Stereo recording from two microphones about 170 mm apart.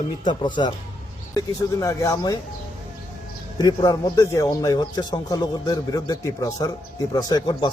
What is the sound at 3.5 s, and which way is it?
A man's voice, 25° left (ahead or behind).